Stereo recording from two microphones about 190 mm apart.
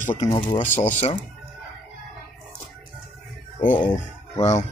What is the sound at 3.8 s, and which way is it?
Speech, 30° left (ahead or behind).